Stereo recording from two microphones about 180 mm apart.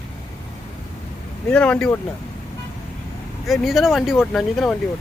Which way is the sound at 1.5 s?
5° left (ahead or behind).